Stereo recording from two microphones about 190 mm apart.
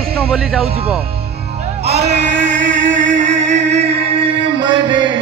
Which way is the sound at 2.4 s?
40° right (ahead or behind).